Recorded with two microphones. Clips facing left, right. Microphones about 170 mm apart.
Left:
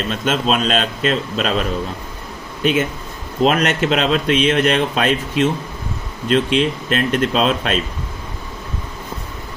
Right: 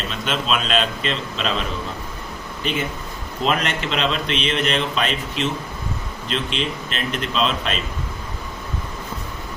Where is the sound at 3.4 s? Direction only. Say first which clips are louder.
Left 7 dB; 45° left (ahead or behind).